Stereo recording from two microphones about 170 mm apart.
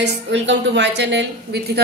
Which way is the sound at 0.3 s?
90° right.